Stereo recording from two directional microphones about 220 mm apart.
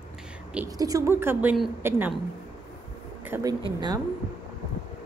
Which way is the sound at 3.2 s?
10° right (ahead or behind).